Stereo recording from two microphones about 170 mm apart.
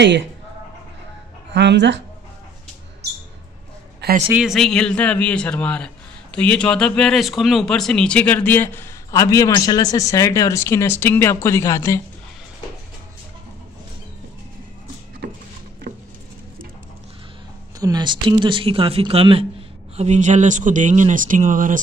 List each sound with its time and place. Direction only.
1.5 s speech: 90° right
4.3 s speech: 5° right (ahead or behind); by 12.0 s 20° left (ahead or behind)
17.7 s speech: 25° right (ahead or behind)
20.0 s speech: 45° right (ahead or behind)